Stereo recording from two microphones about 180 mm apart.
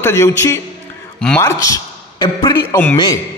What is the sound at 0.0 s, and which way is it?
Speech, 15° left (ahead or behind).